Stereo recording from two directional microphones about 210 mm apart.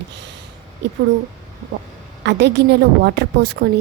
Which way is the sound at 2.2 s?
55° right (ahead or behind).